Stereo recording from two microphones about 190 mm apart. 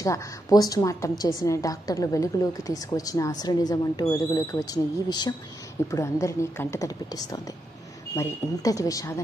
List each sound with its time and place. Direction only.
0.0 s a woman's voice: 20° left (ahead or behind)